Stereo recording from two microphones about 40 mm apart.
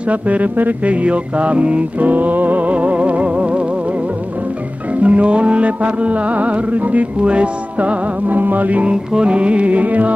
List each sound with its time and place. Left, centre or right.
0.1 s music: right
5.0 s music: right
8.3 s music: right
9.1 s music: right